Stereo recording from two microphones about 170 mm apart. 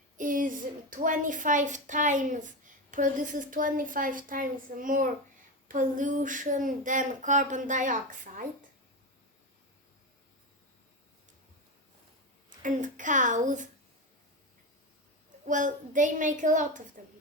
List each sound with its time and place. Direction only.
0.2 s a woman's voice: 50° right (ahead or behind)
12.5 s a woman's voice: 50° right (ahead or behind)
15.4 s a woman's voice: 50° right (ahead or behind)